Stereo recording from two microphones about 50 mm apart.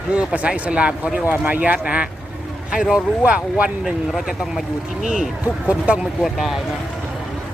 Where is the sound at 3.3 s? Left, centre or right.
Right.